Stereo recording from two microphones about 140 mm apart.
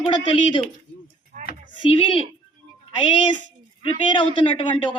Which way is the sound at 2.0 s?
40° left (ahead or behind).